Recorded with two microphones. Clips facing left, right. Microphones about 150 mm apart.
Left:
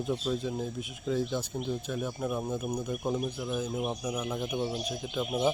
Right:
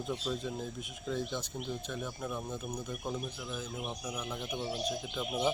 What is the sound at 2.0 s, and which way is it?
Speech, 25° left (ahead or behind).